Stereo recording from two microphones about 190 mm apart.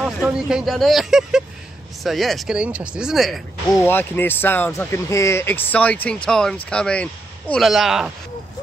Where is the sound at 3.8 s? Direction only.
10° left (ahead or behind).